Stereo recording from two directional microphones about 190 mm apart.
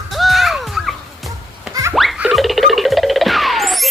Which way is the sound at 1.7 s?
15° right (ahead or behind).